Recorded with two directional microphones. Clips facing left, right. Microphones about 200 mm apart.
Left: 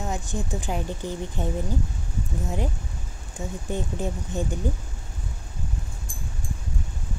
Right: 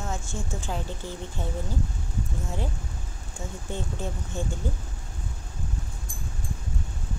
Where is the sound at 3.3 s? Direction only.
15° left (ahead or behind).